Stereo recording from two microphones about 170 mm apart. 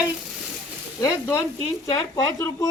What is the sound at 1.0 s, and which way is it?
Speech, 20° left (ahead or behind).